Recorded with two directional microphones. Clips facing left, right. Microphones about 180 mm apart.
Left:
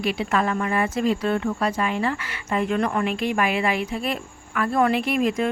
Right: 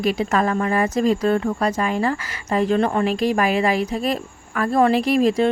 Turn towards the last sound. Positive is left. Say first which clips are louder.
# right 5 dB
turn(degrees=-35)  # may be behind; listen again after turning